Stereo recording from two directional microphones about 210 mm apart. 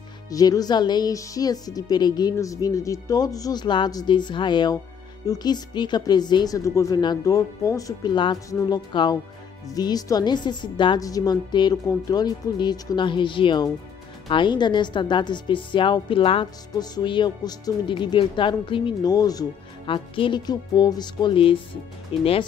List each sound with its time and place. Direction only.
0.3 s a woman's voice: 15° left (ahead or behind)